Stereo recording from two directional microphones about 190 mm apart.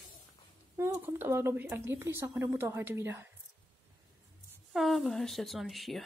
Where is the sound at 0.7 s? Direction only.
10° right (ahead or behind).